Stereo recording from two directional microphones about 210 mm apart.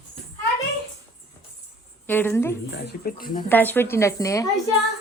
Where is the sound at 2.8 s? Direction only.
50° left (ahead or behind).